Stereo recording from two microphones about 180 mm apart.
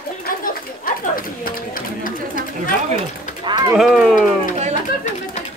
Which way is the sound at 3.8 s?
Centre (ahead or behind).